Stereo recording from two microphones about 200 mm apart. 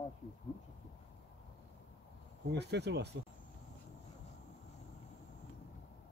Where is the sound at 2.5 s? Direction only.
55° right (ahead or behind).